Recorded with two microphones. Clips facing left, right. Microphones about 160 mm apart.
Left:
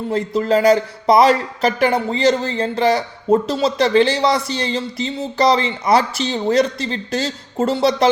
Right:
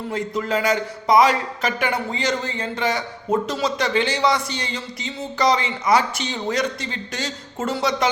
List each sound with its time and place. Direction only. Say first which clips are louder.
0.1 s a man's voice: left 7 dB; 35° left (ahead or behind)